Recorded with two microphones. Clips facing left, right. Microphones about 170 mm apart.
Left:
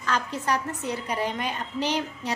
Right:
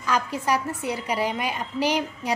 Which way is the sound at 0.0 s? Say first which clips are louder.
Right 3 dB; 10° right (ahead or behind).